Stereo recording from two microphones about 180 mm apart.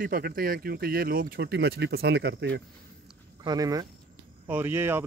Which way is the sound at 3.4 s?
20° right (ahead or behind).